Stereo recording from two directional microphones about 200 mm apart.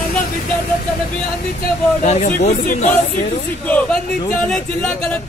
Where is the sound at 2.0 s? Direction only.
35° left (ahead or behind).